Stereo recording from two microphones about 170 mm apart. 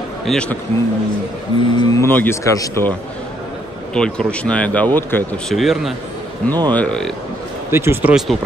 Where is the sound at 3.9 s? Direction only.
5° left (ahead or behind).